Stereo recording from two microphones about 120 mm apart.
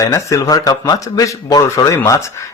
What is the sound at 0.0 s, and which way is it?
Speech, 25° left (ahead or behind).